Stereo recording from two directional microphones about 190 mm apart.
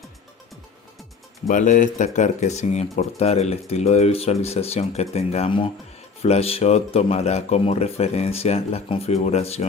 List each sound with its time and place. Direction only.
1.5 s speech: 40° left (ahead or behind)